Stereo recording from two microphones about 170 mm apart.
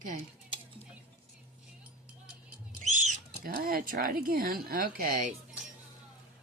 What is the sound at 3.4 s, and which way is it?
Speech, 60° right (ahead or behind).